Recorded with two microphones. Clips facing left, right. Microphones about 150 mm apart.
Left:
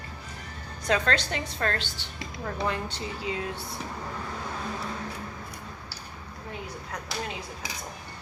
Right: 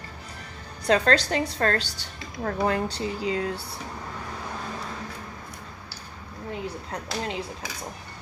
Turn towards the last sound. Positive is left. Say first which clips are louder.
# right 4 dB
turn(degrees=-25)  # may be behind; listen again after turning